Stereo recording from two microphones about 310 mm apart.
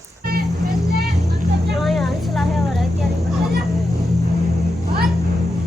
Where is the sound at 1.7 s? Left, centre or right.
Centre.